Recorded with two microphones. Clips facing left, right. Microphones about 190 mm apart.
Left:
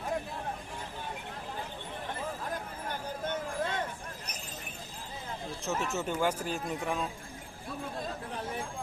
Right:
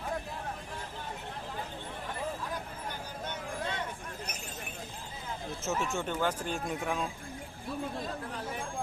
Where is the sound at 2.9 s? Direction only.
50° left (ahead or behind).